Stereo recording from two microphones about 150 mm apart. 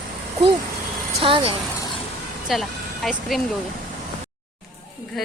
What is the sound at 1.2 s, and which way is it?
Speech, 35° right (ahead or behind).